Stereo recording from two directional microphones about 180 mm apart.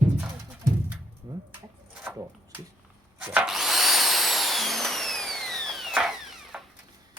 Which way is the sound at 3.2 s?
5° right (ahead or behind).